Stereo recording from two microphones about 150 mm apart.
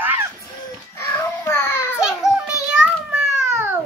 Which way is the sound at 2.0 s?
5° right (ahead or behind).